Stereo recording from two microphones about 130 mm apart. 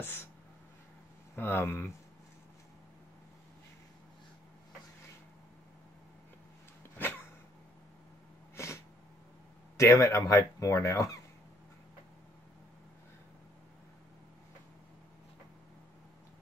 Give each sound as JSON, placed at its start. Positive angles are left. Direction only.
{"t": 0.0, "sound": "speech", "side_deg": 15}
{"t": 1.3, "sound": "speech", "side_deg": 15}
{"t": 7.0, "sound": "a sound", "side_deg": 15}
{"t": 8.6, "sound": "sneeze", "side_deg": 20}
{"t": 9.8, "sound": "speech", "side_deg": 25}